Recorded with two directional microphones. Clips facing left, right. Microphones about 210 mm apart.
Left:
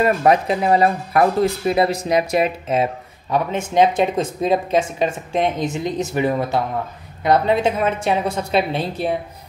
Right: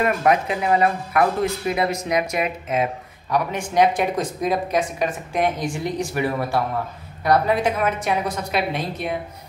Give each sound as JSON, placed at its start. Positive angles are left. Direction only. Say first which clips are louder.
{"t": 0.0, "sound": "speech", "louder": "left 3 dB", "side_deg": 30}